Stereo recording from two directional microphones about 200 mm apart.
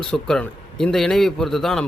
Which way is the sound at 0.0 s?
5° left (ahead or behind).